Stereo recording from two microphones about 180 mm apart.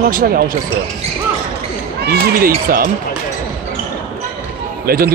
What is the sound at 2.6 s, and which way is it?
Speech, 55° right (ahead or behind).